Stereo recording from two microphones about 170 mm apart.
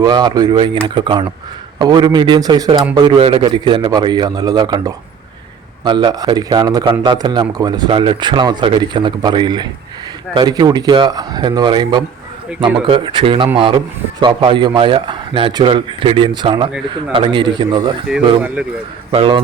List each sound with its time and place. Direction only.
0.0 s speech: 25° right (ahead or behind)
18.6 s speech: 10° right (ahead or behind)
19.1 s a man's voice: 30° right (ahead or behind)